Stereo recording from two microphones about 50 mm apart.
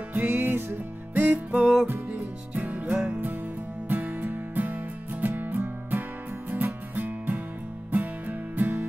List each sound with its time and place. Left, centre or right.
0.1 s music: right
1.2 s music: right
1.6 s music: centre
2.5 s music: right